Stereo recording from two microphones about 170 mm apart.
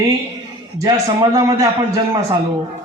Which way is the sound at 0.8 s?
25° right (ahead or behind).